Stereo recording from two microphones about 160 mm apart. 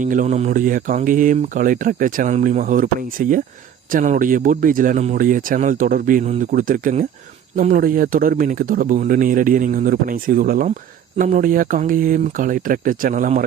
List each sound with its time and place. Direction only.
0.0 s speech: 55° right (ahead or behind)